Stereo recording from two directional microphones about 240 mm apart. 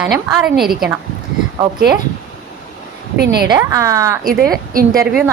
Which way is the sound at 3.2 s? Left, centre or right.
Right.